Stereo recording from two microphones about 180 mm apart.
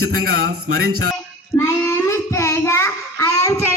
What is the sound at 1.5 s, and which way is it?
Child singing, 15° left (ahead or behind).